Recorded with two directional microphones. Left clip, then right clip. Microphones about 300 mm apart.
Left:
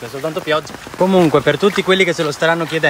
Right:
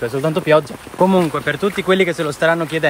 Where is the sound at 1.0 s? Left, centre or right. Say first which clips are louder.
Left 1 dB; centre.